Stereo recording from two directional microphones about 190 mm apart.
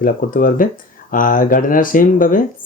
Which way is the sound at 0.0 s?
45° left (ahead or behind).